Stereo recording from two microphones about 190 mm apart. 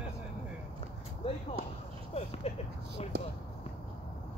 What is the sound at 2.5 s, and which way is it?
Speech, 30° left (ahead or behind).